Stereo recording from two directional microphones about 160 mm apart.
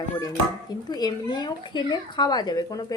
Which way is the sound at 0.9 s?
25° left (ahead or behind).